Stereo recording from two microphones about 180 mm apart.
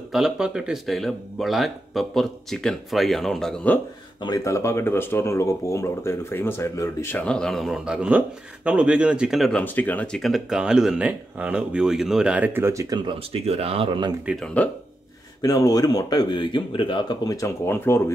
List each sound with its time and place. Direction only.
0.1 s speech: 5° right (ahead or behind)
4.2 s speech: 20° left (ahead or behind); by 14.1 s 25° right (ahead or behind)
14.2 s speech: centre (ahead or behind)
15.4 s speech: 20° left (ahead or behind)